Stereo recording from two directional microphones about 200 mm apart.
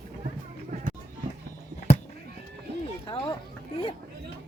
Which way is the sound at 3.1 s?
25° left (ahead or behind).